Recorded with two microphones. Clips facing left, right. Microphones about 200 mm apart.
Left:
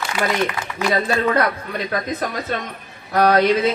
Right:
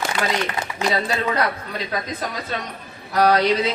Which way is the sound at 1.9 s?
50° left (ahead or behind).